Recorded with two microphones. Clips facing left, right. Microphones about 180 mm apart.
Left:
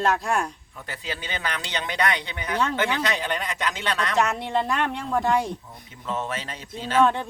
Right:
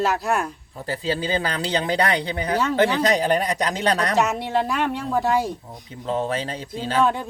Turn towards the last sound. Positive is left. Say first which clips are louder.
# even
turn(degrees=-5)  # may be behind; listen again after turning